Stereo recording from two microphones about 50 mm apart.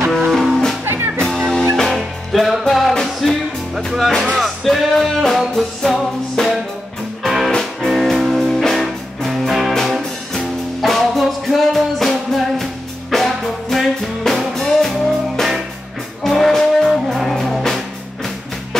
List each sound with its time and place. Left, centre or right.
0.3 s music: centre
0.8 s music: right
1.5 s music: centre
7.2 s music: centre